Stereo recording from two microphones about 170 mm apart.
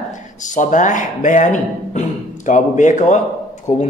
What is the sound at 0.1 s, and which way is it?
A man's voice, 45° left (ahead or behind).